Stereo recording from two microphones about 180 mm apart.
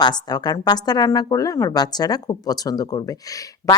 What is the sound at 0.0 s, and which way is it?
A woman's voice, 25° left (ahead or behind).